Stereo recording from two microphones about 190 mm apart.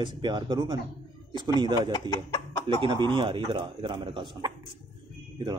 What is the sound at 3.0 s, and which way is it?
Speech, 25° right (ahead or behind).